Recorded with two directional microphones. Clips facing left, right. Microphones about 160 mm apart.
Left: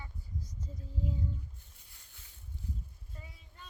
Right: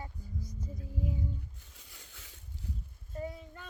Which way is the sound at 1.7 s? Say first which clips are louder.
Right 8 dB; 90° right.